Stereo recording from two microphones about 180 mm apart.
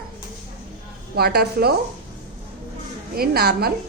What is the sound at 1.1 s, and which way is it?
Speech, 60° right (ahead or behind).